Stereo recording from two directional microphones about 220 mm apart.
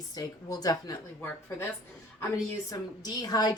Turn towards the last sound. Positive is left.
turn(degrees=20)  # may be behind; listen again after turning